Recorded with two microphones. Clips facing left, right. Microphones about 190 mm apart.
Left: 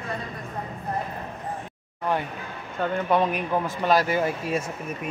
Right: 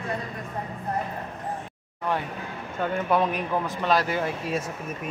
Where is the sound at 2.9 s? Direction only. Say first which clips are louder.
Left 1 dB; centre (ahead or behind).